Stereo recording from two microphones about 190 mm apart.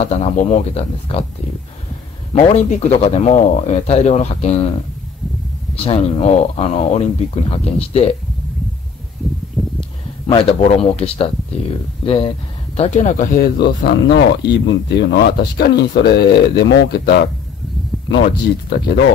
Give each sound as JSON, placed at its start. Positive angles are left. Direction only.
{"t": 0.0, "sound": "speech", "side_deg": 35}
{"t": 2.3, "sound": "speech", "side_deg": 35}
{"t": 5.9, "sound": "speech", "side_deg": 30}
{"t": 9.8, "sound": "speech", "side_deg": 30}
{"t": 12.7, "sound": "speech", "side_deg": 35}
{"t": 13.6, "sound": "speech", "side_deg": 60}